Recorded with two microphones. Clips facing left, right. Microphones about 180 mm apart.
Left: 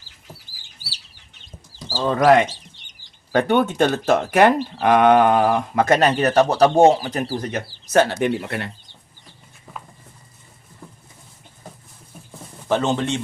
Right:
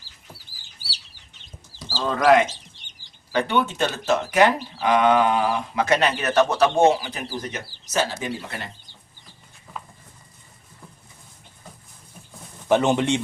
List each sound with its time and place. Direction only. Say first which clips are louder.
2.0 s speech: left 4 dB; 25° left (ahead or behind)
3.3 s speech: left 5 dB; 45° left (ahead or behind)
7.4 s speech: left 6 dB; 55° left (ahead or behind)
12.6 s speech: right 2 dB; 15° right (ahead or behind)